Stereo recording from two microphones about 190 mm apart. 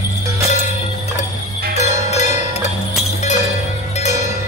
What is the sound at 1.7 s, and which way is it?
Music, 35° left (ahead or behind).